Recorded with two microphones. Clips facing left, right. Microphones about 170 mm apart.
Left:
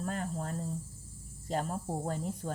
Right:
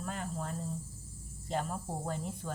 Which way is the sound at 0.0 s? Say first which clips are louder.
Left 3 dB; 40° left (ahead or behind).